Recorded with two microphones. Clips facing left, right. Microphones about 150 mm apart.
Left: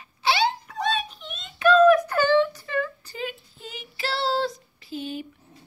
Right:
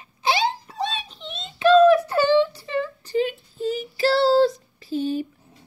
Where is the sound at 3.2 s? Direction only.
35° right (ahead or behind).